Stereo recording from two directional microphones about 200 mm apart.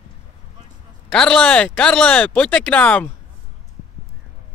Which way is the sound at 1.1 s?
5° left (ahead or behind).